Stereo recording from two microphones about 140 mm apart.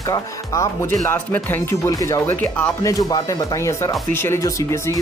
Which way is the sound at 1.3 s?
15° left (ahead or behind).